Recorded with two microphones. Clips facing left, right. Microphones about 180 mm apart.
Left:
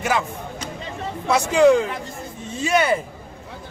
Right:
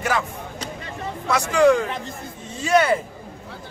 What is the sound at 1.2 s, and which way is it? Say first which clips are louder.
Speech: left 2 dB; 20° left (ahead or behind).